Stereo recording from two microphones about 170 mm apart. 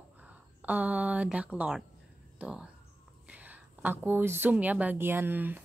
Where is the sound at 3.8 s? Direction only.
10° right (ahead or behind).